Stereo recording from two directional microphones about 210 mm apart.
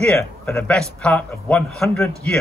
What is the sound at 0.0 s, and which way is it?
A man's voice, 5° left (ahead or behind).